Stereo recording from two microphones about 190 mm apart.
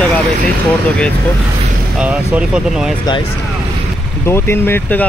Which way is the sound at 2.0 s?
5° right (ahead or behind).